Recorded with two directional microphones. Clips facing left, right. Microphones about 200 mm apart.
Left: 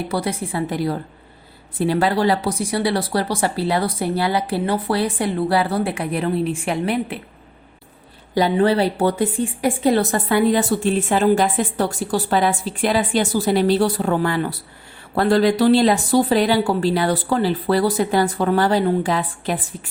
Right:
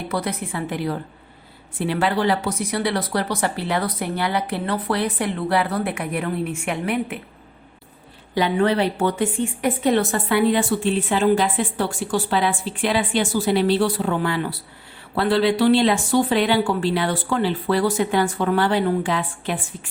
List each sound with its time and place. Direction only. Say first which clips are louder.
0.1 s a woman's voice: left 2 dB; 30° left (ahead or behind)
8.4 s a woman's voice: left 3 dB; 35° left (ahead or behind)